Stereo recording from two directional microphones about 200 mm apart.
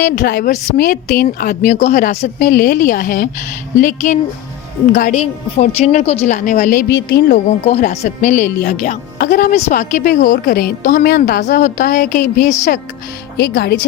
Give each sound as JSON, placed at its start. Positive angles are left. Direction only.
{"t": 0.0, "sound": "a woman's voice", "side_deg": 50}
{"t": 0.5, "sound": "speech", "side_deg": 40}
{"t": 7.6, "sound": "speech", "side_deg": 35}
{"t": 13.3, "sound": "speech", "side_deg": 55}